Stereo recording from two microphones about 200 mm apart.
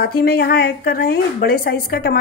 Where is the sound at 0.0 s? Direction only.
50° left (ahead or behind).